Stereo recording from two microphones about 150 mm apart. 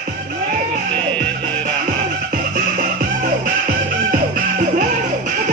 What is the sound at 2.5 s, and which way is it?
Music, 65° right (ahead or behind).